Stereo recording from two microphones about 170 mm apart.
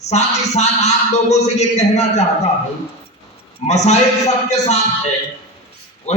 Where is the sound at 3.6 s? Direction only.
40° left (ahead or behind).